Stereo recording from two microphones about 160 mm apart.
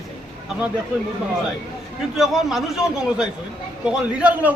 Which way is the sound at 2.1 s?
Centre (ahead or behind).